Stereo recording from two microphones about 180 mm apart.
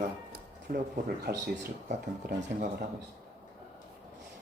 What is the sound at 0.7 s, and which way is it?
Speech, 50° right (ahead or behind).